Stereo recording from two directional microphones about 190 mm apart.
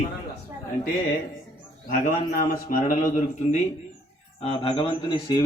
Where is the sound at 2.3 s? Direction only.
50° left (ahead or behind).